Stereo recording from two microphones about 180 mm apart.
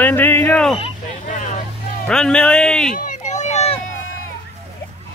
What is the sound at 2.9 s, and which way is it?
Run, 40° left (ahead or behind).